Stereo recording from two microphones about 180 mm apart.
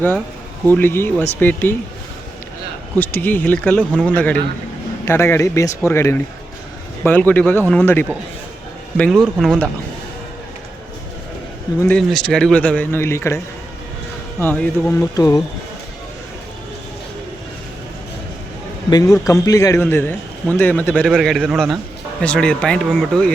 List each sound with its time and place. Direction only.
0.8 s a man's voice: 10° left (ahead or behind)
3.0 s a man's voice: 10° left (ahead or behind)
9.0 s speech: centre (ahead or behind)
11.8 s a man's voice: 5° left (ahead or behind)
18.9 s a man's voice: 20° left (ahead or behind); by 23.3 s 5° left (ahead or behind)